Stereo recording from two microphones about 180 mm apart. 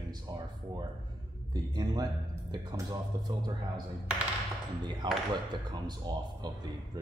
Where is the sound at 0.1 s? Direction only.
25° right (ahead or behind).